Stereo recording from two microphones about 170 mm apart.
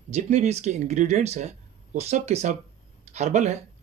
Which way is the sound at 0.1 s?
40° right (ahead or behind).